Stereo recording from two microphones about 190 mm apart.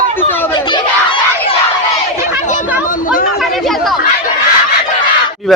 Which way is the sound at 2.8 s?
45° left (ahead or behind).